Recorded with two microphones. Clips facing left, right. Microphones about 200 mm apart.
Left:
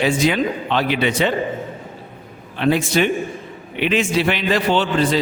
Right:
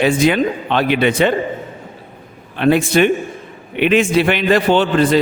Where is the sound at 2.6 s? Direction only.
55° right (ahead or behind).